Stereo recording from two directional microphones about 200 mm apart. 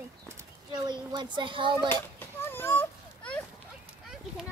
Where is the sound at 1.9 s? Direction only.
10° left (ahead or behind).